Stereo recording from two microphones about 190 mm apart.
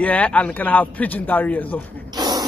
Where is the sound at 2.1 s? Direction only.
20° right (ahead or behind).